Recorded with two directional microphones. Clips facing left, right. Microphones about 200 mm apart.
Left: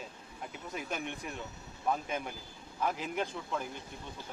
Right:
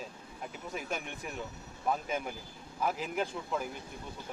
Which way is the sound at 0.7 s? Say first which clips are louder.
Left 1 dB; centre (ahead or behind).